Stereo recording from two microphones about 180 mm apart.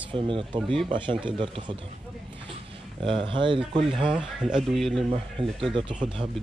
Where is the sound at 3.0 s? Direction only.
30° right (ahead or behind).